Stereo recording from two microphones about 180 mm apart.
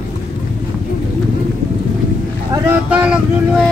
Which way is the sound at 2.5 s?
15° right (ahead or behind).